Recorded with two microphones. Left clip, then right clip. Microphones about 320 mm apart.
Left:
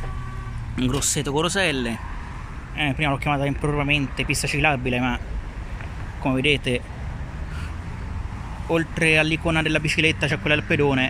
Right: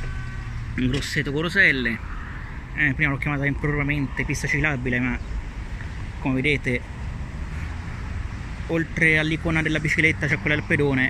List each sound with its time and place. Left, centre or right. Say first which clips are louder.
1.1 s speech: right 3 dB; centre
4.2 s speech: left 2 dB; left
4.5 s speech: left 2 dB; centre
6.2 s speech: left 2 dB; centre
8.6 s speech: even; centre